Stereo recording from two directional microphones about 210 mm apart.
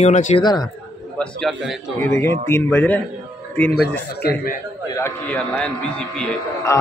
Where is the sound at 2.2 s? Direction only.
10° left (ahead or behind).